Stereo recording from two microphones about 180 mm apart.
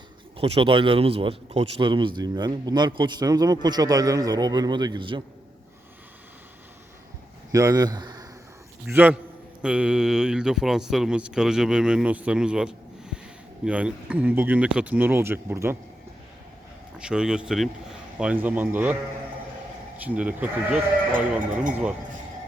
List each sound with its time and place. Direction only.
0.3 s a man's voice: 30° right (ahead or behind)
7.5 s speech: 20° right (ahead or behind)
8.9 s a man's voice: 10° right (ahead or behind)
17.0 s a man's voice: 5° right (ahead or behind)
20.1 s speech: 5° right (ahead or behind)